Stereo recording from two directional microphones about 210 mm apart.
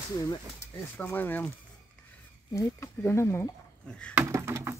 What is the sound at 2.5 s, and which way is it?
Speech, 15° left (ahead or behind).